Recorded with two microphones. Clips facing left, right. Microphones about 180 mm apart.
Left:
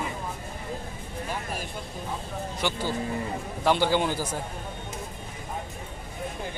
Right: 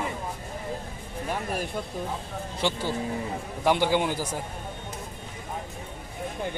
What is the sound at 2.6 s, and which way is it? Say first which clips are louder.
Speech: right 2 dB; 25° right (ahead or behind).